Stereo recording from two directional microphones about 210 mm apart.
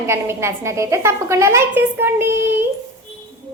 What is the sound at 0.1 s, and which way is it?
A woman's voice, 10° right (ahead or behind).